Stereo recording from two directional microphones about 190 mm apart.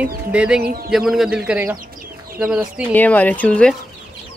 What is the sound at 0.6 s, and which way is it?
Speech, 55° right (ahead or behind).